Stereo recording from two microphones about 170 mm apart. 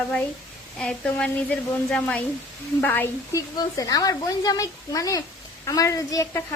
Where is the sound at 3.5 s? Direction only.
20° left (ahead or behind).